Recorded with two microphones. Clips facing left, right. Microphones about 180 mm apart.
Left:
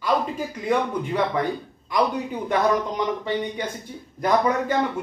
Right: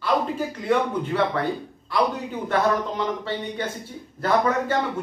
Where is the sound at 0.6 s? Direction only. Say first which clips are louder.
Even; 10° left (ahead or behind).